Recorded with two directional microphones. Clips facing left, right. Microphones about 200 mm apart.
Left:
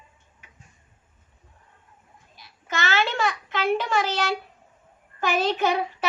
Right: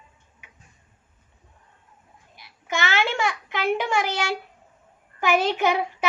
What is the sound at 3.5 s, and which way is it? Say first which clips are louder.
A child's voice: even; 15° right (ahead or behind).